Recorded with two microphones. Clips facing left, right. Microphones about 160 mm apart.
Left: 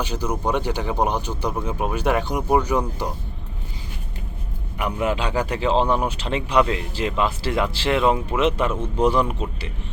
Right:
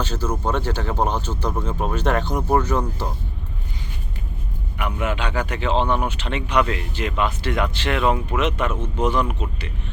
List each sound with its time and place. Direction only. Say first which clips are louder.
0.0 s speech: even; 15° left (ahead or behind)
4.8 s a man's voice: left 2 dB; 35° left (ahead or behind)